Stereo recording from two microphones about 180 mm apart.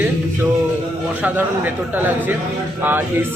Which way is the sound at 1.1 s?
10° right (ahead or behind).